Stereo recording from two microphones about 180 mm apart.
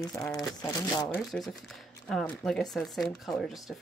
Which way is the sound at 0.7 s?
20° left (ahead or behind).